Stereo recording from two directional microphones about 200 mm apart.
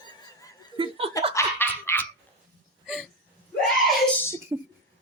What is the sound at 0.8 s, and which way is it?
Speech, 30° right (ahead or behind).